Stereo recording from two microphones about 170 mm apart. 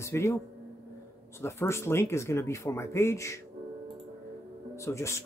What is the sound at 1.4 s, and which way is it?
Speech, 15° left (ahead or behind).